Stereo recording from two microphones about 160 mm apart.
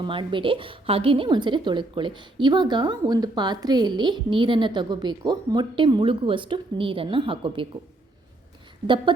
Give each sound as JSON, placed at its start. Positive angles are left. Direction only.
{"t": 0.0, "sound": "a woman's voice", "side_deg": -30}